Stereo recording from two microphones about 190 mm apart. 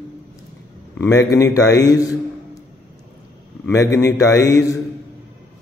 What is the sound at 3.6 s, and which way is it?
A man's voice, 15° left (ahead or behind).